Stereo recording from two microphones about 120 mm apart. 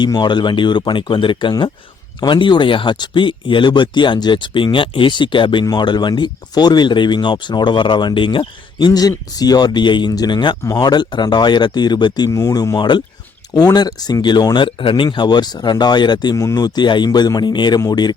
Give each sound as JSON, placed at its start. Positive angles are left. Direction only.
{"t": 0.0, "sound": "speech", "side_deg": 40}
{"t": 8.9, "sound": "speech", "side_deg": 30}
{"t": 10.6, "sound": "speech", "side_deg": 20}
{"t": 10.8, "sound": "speech", "side_deg": 35}